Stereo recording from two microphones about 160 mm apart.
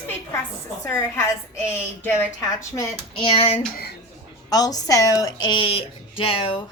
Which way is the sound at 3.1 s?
35° left (ahead or behind).